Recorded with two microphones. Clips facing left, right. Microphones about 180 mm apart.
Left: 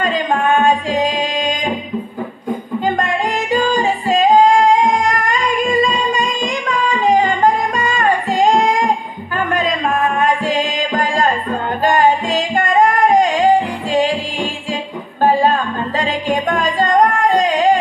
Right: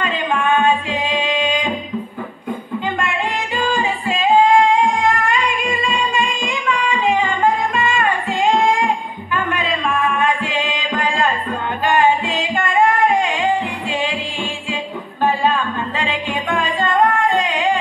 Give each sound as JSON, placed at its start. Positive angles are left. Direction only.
{"t": 0.0, "sound": "music", "side_deg": 45}
{"t": 2.8, "sound": "music", "side_deg": 40}